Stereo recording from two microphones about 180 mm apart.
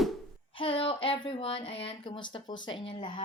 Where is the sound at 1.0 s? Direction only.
25° left (ahead or behind).